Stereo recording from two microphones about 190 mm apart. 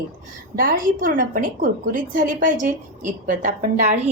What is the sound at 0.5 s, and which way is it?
A woman's voice, 45° right (ahead or behind).